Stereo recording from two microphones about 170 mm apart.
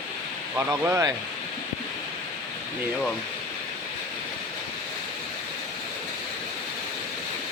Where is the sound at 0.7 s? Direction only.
15° right (ahead or behind).